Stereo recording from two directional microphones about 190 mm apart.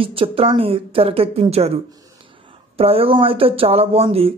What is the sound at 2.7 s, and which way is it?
Speech, 30° right (ahead or behind).